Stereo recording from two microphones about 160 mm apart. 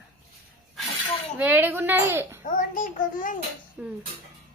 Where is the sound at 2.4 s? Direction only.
55° left (ahead or behind).